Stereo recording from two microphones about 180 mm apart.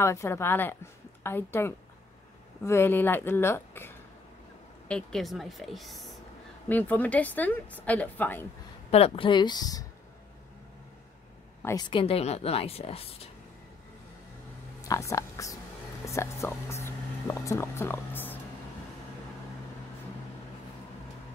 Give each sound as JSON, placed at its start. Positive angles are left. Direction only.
{"t": 0.0, "sound": "a woman's voice", "side_deg": 15}
{"t": 8.9, "sound": "speech", "side_deg": 30}
{"t": 11.6, "sound": "speech", "side_deg": 20}
{"t": 14.9, "sound": "a woman's voice", "side_deg": 15}